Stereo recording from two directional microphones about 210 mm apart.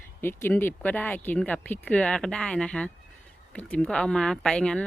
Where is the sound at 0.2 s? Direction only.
10° left (ahead or behind).